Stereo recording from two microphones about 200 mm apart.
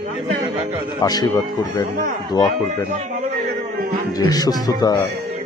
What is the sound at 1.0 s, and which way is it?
Speech, 20° left (ahead or behind).